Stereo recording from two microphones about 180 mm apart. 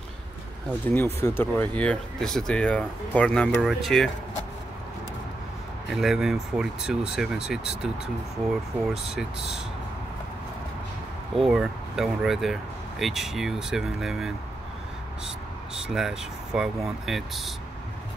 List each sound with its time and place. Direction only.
0.8 s speech: 15° left (ahead or behind)
5.9 s speech: centre (ahead or behind)
8.9 s speech: centre (ahead or behind)
11.3 s speech: centre (ahead or behind)
15.9 s speech: 5° right (ahead or behind)